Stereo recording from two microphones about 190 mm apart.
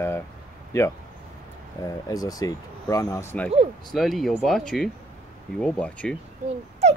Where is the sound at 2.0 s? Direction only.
20° left (ahead or behind).